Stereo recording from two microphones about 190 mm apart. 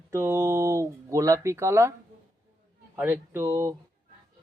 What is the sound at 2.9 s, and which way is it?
Speech, 10° right (ahead or behind).